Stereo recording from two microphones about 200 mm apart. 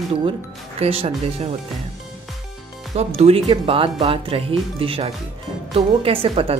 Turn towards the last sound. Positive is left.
turn(degrees=-25)  # may be behind; listen again after turning